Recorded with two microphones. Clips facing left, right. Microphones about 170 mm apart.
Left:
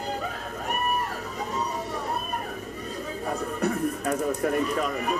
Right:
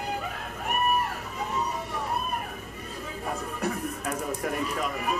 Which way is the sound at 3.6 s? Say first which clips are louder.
Left 7 dB; 35° left (ahead or behind).